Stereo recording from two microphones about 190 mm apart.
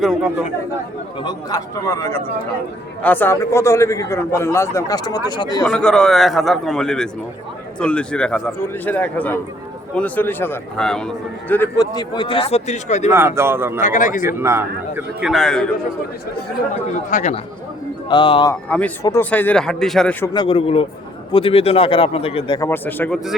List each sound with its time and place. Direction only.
0.0 s a man's voice: 5° right (ahead or behind)
1.2 s a man's voice: 20° left (ahead or behind)
5.6 s a man's voice: 5° left (ahead or behind)
11.9 s a man's voice: 25° left (ahead or behind)
13.1 s speech: 15° right (ahead or behind)
13.8 s a man's voice: 40° left (ahead or behind)
14.3 s speech: 15° right (ahead or behind)
15.3 s a man's voice: centre (ahead or behind)
17.1 s a man's voice: 40° left (ahead or behind)
18.1 s speech: 25° left (ahead or behind)
18.5 s a man's voice: 5° left (ahead or behind)
20.3 s speech: 25° left (ahead or behind)
22.7 s a man's voice: 10° left (ahead or behind)